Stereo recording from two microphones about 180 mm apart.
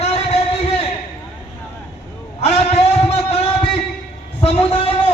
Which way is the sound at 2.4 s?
35° left (ahead or behind).